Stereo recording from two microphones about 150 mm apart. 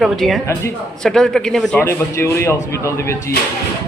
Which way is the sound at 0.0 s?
Centre (ahead or behind).